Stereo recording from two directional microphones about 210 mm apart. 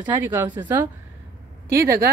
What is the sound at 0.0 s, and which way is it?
Speech, 10° right (ahead or behind).